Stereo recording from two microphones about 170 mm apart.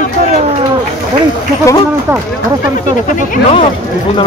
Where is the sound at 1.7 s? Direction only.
20° left (ahead or behind).